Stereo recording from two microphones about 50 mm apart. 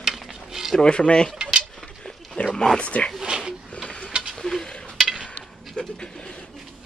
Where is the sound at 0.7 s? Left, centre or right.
Centre.